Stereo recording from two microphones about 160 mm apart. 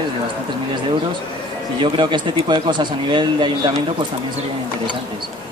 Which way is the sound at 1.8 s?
30° right (ahead or behind).